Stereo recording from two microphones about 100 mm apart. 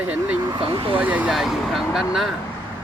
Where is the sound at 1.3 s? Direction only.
5° right (ahead or behind).